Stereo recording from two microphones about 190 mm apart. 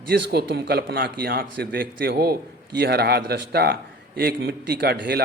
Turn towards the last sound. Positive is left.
turn(degrees=-55)  # may be behind; listen again after turning